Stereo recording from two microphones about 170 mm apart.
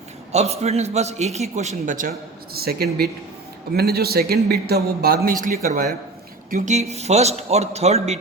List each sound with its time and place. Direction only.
0.3 s a man's voice: 40° right (ahead or behind); by 5.9 s 55° right (ahead or behind)
6.5 s a man's voice: 45° right (ahead or behind)